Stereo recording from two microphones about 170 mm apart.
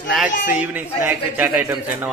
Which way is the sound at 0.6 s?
10° right (ahead or behind).